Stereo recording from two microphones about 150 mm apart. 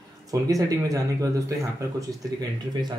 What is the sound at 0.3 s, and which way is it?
A man's voice, 20° right (ahead or behind).